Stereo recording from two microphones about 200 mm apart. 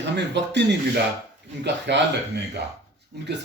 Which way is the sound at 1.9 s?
60° right (ahead or behind).